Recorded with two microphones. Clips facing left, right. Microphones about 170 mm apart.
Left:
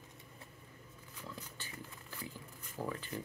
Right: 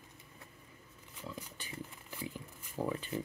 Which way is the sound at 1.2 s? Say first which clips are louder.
Right 3 dB; 15° right (ahead or behind).